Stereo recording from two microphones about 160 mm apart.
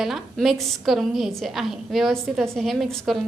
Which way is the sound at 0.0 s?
Centre (ahead or behind).